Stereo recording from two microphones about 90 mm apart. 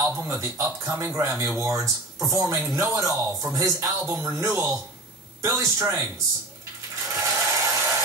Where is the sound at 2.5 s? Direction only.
30° right (ahead or behind).